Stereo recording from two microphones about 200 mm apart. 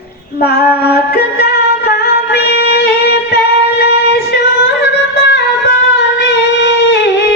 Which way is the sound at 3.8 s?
55° left (ahead or behind).